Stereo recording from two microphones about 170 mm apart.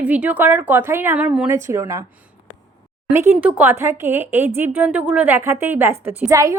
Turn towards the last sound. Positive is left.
turn(degrees=-15)  # may be behind; listen again after turning